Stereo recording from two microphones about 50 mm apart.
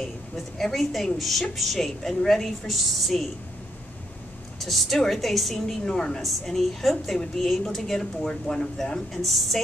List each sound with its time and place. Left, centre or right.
0.6 s a woman's voice: centre
4.6 s a woman's voice: centre
9.2 s a woman's voice: centre